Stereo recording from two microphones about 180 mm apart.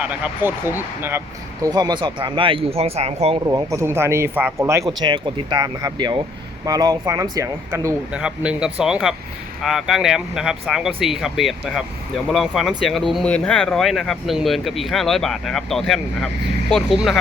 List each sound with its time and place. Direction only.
0.0 s speech: 10° right (ahead or behind); by 3.4 s 35° right (ahead or behind)
3.4 s speech: 20° right (ahead or behind)
4.9 s speech: 25° right (ahead or behind); by 17.2 s centre (ahead or behind)